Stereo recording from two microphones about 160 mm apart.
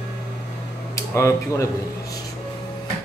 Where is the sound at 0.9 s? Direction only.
20° left (ahead or behind).